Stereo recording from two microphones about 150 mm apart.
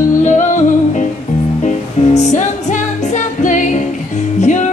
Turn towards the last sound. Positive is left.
turn(degrees=50)  # may be behind; listen again after turning